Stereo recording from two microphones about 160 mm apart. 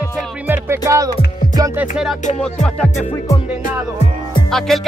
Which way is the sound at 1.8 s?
5° right (ahead or behind).